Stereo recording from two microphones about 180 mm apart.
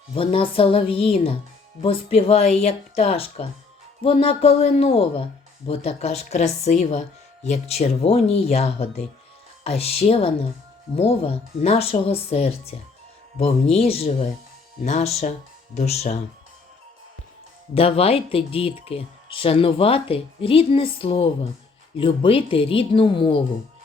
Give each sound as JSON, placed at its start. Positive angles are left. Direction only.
{"t": 0.2, "sound": "speech", "side_deg": 30}
{"t": 17.7, "sound": "speech", "side_deg": 30}